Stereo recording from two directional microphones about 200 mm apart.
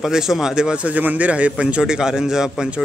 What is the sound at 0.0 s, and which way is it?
Speech, centre (ahead or behind).